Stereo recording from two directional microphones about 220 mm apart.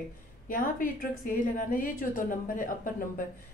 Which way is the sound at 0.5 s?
40° left (ahead or behind).